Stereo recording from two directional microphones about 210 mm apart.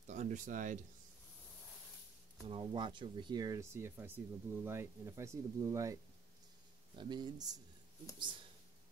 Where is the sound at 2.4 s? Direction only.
25° right (ahead or behind).